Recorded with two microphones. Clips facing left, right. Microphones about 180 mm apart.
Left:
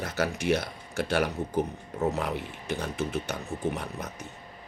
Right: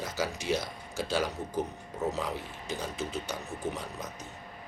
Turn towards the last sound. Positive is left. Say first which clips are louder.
# left 4 dB
turn(degrees=65)  # may be behind; listen again after turning